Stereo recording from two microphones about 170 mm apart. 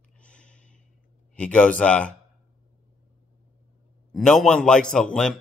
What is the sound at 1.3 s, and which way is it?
Speech, 5° left (ahead or behind).